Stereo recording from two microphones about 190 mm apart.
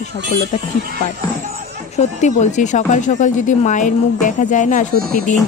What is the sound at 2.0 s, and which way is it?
A woman's voice, 40° left (ahead or behind).